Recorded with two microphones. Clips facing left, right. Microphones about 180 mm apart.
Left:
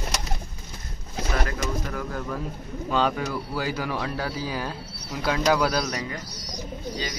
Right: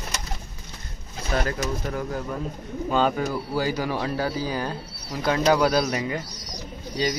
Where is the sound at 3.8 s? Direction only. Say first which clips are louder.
Right 2 dB; 30° right (ahead or behind).